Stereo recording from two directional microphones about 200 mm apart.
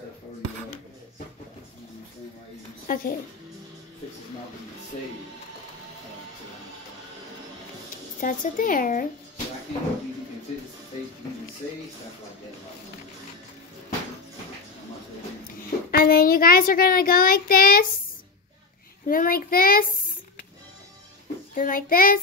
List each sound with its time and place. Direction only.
2.9 s speech: 45° left (ahead or behind)
8.2 s a woman's voice: 45° left (ahead or behind)
15.5 s a woman's voice: 45° left (ahead or behind)
19.0 s a woman's voice: 45° left (ahead or behind)
21.5 s a woman's voice: 45° left (ahead or behind)